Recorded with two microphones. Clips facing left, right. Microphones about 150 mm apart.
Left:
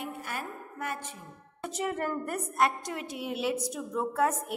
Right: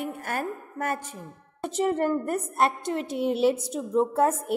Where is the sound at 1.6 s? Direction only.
30° right (ahead or behind).